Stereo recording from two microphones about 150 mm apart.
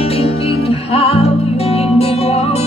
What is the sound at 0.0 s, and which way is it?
Music, 40° left (ahead or behind).